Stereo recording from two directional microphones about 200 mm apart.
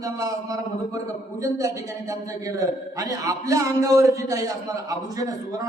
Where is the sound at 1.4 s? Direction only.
15° right (ahead or behind).